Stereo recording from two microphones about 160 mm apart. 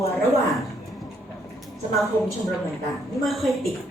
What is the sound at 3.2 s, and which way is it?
Speech, centre (ahead or behind).